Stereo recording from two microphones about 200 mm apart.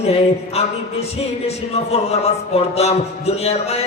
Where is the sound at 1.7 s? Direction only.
30° left (ahead or behind).